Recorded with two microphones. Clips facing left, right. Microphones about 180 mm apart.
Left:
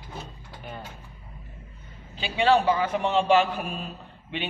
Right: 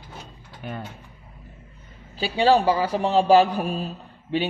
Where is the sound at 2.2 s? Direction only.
35° right (ahead or behind).